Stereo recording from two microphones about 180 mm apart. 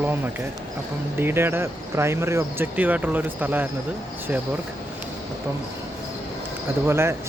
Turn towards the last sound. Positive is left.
turn(degrees=-15)  # may be behind; listen again after turning